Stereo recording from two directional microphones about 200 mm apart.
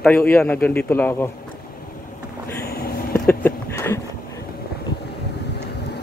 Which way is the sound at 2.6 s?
50° left (ahead or behind).